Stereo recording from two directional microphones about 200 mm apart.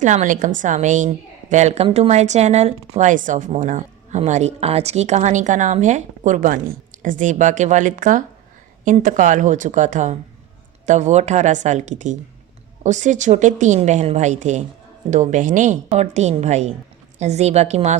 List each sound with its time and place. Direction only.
0.0 s a woman's voice: 35° right (ahead or behind)